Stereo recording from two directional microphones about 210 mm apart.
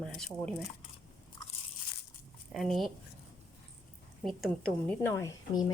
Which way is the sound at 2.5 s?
Centre (ahead or behind).